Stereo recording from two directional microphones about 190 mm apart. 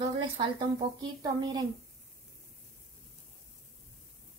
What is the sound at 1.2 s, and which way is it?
Child singing, 20° right (ahead or behind).